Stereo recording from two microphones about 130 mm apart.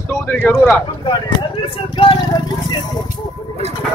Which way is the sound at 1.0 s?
40° left (ahead or behind).